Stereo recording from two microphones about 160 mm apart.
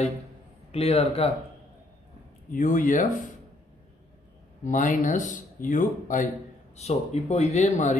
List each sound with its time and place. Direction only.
0.7 s a man's voice: 40° left (ahead or behind)
2.5 s speech: 55° left (ahead or behind)
4.6 s speech: 55° left (ahead or behind)
6.8 s speech: 40° left (ahead or behind)